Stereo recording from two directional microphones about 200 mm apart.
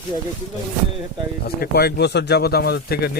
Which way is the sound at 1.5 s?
50° left (ahead or behind).